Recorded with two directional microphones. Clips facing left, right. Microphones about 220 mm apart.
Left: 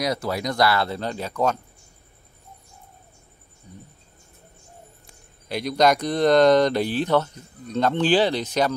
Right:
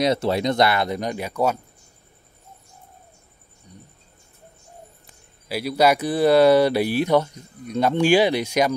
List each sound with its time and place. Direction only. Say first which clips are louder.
0.0 s speech: right 5 dB; 25° right (ahead or behind); by 1.6 s 10° right (ahead or behind)
5.0 s speech: even; 5° right (ahead or behind)